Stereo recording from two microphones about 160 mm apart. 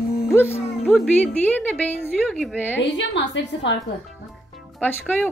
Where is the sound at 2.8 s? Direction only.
90° left.